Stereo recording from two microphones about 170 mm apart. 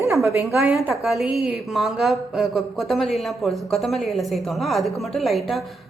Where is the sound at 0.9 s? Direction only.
5° right (ahead or behind).